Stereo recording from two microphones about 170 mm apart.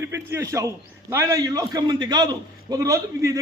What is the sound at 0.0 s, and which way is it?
A man's voice, 15° right (ahead or behind).